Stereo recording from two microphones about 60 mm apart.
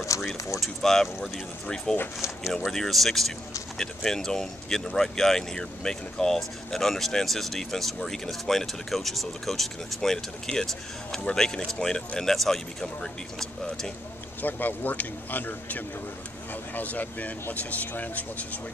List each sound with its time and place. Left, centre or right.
0.2 s a sound: centre
1.2 s speech: centre
14.4 s speech: left